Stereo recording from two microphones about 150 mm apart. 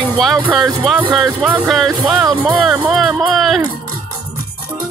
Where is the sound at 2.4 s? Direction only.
10° right (ahead or behind).